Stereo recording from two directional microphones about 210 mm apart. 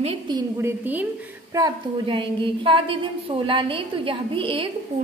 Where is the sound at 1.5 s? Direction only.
20° right (ahead or behind).